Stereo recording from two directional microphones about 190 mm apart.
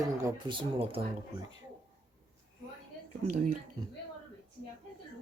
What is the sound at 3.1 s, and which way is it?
Speech, 40° right (ahead or behind).